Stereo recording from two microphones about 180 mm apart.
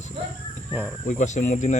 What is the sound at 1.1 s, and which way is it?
Speech, 40° left (ahead or behind).